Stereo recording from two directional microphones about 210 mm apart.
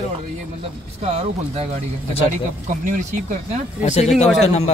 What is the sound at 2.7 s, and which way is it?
Speech, 40° right (ahead or behind).